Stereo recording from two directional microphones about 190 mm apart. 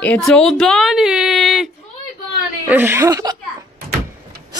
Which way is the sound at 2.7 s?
10° right (ahead or behind).